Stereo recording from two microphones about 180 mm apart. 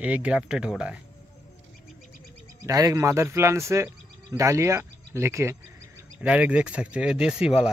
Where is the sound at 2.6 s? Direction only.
20° right (ahead or behind).